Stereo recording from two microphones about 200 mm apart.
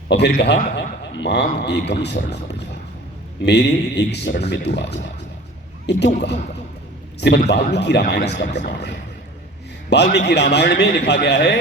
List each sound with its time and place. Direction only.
0.1 s a man's voice: 55° left (ahead or behind)
3.4 s a man's voice: 60° left (ahead or behind)
7.2 s a man's voice: 55° left (ahead or behind)
9.9 s a man's voice: 60° left (ahead or behind)